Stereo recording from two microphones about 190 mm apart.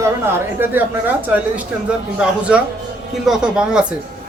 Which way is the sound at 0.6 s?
10° right (ahead or behind).